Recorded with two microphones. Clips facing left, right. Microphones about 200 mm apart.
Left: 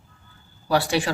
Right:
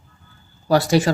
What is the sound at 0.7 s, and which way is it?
Speech, 40° right (ahead or behind).